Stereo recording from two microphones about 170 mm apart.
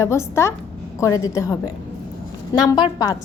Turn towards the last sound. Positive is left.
turn(degrees=25)  # may be behind; listen again after turning